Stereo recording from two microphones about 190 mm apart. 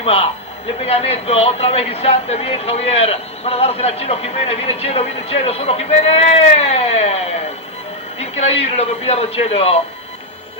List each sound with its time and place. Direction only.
0.0 s a man's voice: 30° left (ahead or behind)